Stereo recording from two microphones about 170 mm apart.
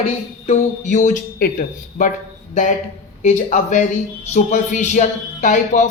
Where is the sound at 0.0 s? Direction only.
40° left (ahead or behind).